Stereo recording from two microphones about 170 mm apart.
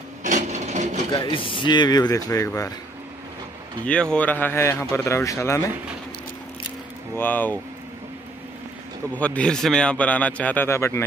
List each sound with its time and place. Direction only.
0.2 s wood: 45° right (ahead or behind)
1.1 s speech: 30° left (ahead or behind)
3.8 s a man's voice: 5° left (ahead or behind)
7.2 s a man's voice: 10° left (ahead or behind)
9.1 s a man's voice: 10° left (ahead or behind)